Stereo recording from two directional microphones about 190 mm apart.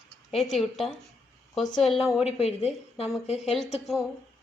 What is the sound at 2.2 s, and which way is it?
A woman's voice, 30° left (ahead or behind).